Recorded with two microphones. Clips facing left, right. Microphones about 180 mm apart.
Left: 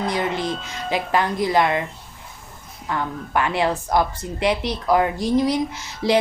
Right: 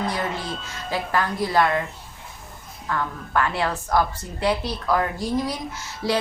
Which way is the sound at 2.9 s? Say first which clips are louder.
Left 1 dB; 20° left (ahead or behind).